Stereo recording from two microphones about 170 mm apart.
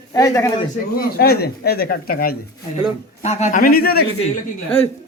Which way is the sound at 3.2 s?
40° left (ahead or behind).